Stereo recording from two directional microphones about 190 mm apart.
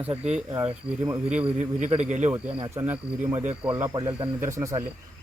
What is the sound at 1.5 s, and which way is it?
Speech, 35° right (ahead or behind).